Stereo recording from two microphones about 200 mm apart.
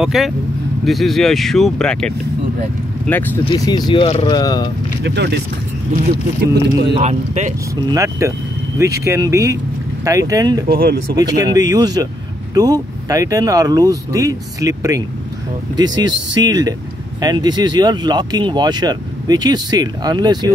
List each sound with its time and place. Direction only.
0.0 s speech: centre (ahead or behind)
3.4 s speech: 20° left (ahead or behind)
5.0 s speech: 60° right (ahead or behind)
6.4 s speech: 55° right (ahead or behind)
6.9 s speech: 35° right (ahead or behind)
7.7 s speech: 15° right (ahead or behind)
10.7 s speech: 50° right (ahead or behind)
11.1 s speech: 20° right (ahead or behind)